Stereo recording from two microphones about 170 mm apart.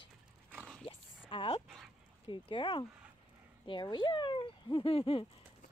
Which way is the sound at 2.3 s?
30° left (ahead or behind).